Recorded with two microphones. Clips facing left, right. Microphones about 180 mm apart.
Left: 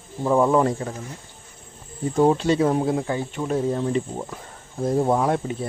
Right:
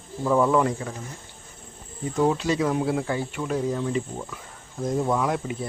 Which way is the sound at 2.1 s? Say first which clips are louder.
Left 4 dB; 30° left (ahead or behind).